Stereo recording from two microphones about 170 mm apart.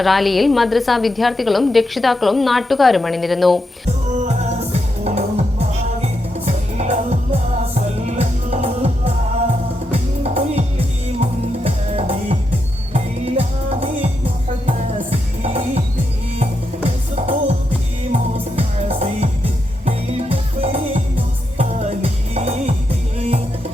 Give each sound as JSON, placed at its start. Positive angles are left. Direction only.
{"t": 0.0, "sound": "a woman's voice", "side_deg": 0}
{"t": 4.2, "sound": "music", "side_deg": -40}
{"t": 18.1, "sound": "music", "side_deg": -35}